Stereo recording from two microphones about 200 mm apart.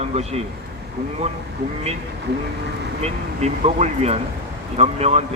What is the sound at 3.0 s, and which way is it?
A man's voice, 35° right (ahead or behind).